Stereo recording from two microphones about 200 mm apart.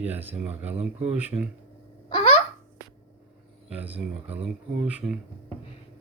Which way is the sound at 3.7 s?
5° right (ahead or behind).